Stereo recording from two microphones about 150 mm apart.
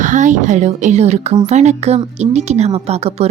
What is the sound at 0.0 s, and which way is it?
A woman's voice, 55° right (ahead or behind).